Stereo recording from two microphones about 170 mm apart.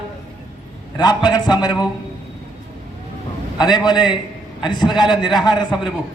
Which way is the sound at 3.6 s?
25° left (ahead or behind).